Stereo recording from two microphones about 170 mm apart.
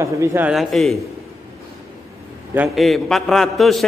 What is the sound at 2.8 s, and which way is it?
A man's voice, centre (ahead or behind).